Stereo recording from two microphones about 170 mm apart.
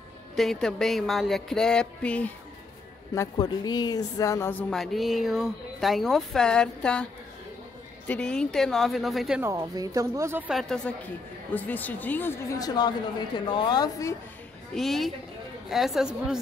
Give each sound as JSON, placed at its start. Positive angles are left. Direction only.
{"t": 0.4, "sound": "speech", "side_deg": 0}
{"t": 3.2, "sound": "speech", "side_deg": 25}
{"t": 8.1, "sound": "speech", "side_deg": 5}
{"t": 9.4, "sound": "speech", "side_deg": -20}
{"t": 10.5, "sound": "a woman's voice", "side_deg": 5}
{"t": 14.7, "sound": "speech", "side_deg": 0}